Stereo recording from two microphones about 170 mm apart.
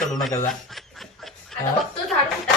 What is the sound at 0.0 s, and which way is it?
Chuckle, centre (ahead or behind).